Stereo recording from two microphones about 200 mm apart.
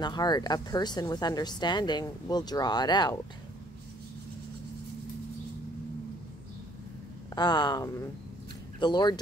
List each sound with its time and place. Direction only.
0.0 s speech: 20° left (ahead or behind)
7.3 s speech: 20° left (ahead or behind)